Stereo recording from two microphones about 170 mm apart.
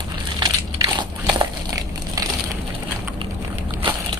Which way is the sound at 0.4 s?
25° right (ahead or behind).